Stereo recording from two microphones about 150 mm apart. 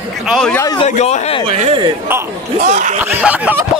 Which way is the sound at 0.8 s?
50° left (ahead or behind).